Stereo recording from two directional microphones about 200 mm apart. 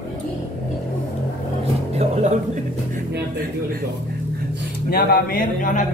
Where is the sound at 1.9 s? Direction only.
35° right (ahead or behind).